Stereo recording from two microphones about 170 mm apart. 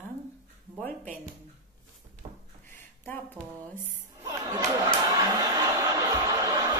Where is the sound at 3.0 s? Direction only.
10° left (ahead or behind).